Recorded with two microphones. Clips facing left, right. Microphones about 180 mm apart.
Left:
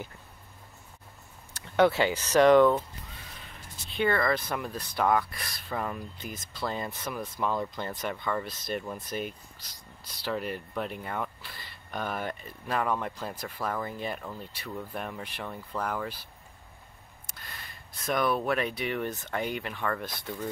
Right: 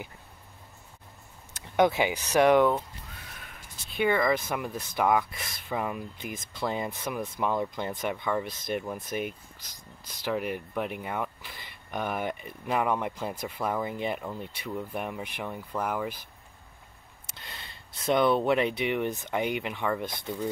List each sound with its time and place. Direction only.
1.5 s speech: 15° right (ahead or behind)
3.9 s speech: 15° right (ahead or behind)
17.3 s speech: 25° right (ahead or behind)